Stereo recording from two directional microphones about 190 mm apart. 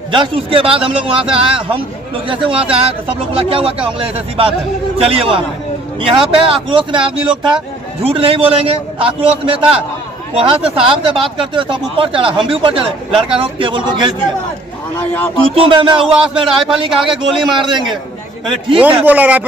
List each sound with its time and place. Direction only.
0.1 s speech: 25° right (ahead or behind)
15.4 s speech: 30° right (ahead or behind)
18.8 s speech: 10° right (ahead or behind)